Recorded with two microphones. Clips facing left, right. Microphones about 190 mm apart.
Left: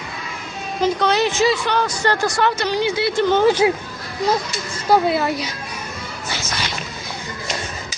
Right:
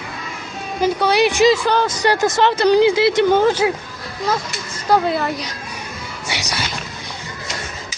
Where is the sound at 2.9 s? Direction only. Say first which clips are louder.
Right 5 dB; 90° right.